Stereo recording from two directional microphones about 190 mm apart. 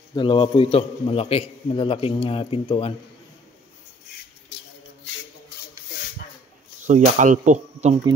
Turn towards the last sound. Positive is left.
turn(degrees=-35)  # may be behind; listen again after turning